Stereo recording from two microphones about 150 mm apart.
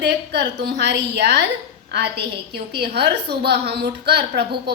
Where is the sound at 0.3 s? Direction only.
90° right.